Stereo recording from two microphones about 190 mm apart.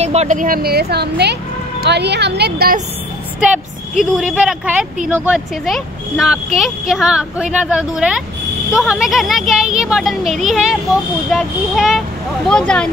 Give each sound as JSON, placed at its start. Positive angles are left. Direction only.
{"t": 0.0, "sound": "speech", "side_deg": -35}
{"t": 4.0, "sound": "speech", "side_deg": -5}